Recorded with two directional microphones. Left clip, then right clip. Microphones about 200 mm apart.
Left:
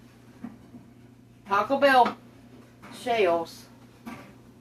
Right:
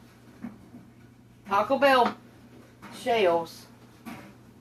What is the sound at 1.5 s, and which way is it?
Speech, 15° right (ahead or behind).